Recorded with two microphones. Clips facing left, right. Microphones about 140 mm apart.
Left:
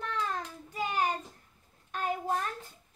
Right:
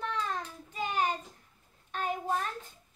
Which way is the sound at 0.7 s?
5° left (ahead or behind).